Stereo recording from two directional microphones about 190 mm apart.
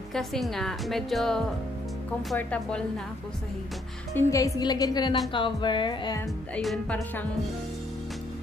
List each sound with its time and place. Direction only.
0.1 s a woman's voice: centre (ahead or behind)
4.1 s a woman's voice: 15° left (ahead or behind)
6.5 s speech: 5° left (ahead or behind)